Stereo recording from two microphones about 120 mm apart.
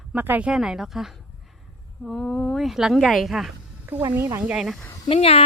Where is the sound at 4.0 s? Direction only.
30° right (ahead or behind).